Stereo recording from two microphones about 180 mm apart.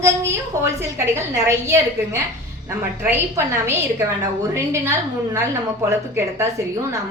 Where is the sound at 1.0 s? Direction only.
15° right (ahead or behind).